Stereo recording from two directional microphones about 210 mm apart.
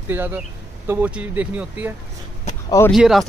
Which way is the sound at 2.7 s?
15° left (ahead or behind).